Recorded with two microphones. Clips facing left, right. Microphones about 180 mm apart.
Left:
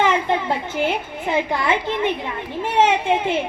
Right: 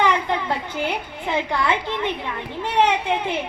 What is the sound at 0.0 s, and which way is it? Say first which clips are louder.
A woman's voice: left 2 dB; 20° left (ahead or behind).